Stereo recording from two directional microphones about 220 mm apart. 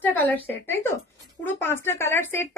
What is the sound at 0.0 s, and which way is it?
A woman's voice, 10° left (ahead or behind).